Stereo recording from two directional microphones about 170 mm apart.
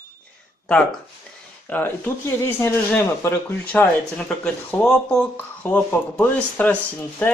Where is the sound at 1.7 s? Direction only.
10° left (ahead or behind).